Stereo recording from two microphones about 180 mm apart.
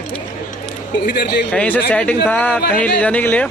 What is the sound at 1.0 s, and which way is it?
Speech, 60° left (ahead or behind).